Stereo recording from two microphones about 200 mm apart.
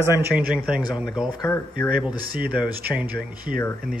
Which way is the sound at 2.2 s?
45° right (ahead or behind).